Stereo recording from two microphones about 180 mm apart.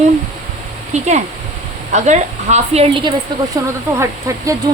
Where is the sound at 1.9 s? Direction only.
40° right (ahead or behind); by 4.5 s 15° right (ahead or behind).